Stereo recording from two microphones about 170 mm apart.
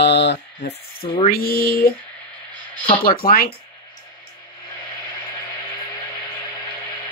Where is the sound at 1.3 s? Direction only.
60° left (ahead or behind).